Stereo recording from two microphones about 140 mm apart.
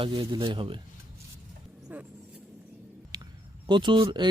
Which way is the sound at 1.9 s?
10° right (ahead or behind).